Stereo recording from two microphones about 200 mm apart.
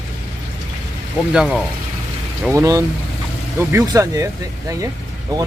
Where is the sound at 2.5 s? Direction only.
15° right (ahead or behind).